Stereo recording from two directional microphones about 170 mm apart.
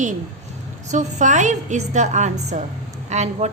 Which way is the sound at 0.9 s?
45° right (ahead or behind).